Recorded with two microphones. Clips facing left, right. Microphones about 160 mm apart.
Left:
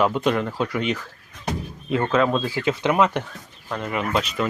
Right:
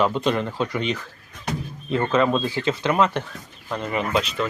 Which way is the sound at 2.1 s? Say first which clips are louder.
Right 1 dB; 5° left (ahead or behind).